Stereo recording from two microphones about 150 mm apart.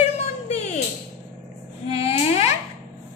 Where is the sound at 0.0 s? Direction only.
45° left (ahead or behind).